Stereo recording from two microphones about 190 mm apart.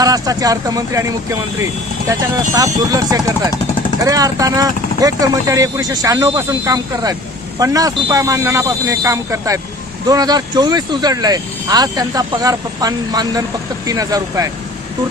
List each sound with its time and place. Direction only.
0.0 s speech: 20° right (ahead or behind)
2.6 s speech: 20° right (ahead or behind)